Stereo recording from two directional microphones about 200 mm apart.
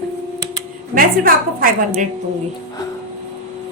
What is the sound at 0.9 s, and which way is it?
Speech, 45° right (ahead or behind).